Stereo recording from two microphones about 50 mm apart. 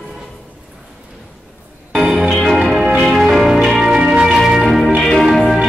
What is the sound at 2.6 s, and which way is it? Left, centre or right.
Music, centre.